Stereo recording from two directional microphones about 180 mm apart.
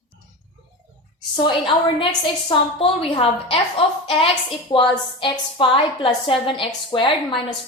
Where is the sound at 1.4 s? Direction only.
25° left (ahead or behind).